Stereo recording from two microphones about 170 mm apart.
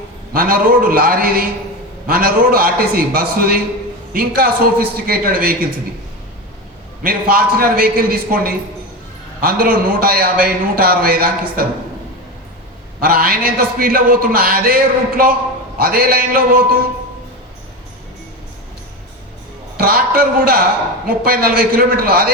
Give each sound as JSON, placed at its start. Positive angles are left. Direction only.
{"t": 0.3, "sound": "a man's voice", "side_deg": -60}
{"t": 7.0, "sound": "a man's voice", "side_deg": -60}
{"t": 13.0, "sound": "a man's voice", "side_deg": -60}
{"t": 19.7, "sound": "a man's voice", "side_deg": -60}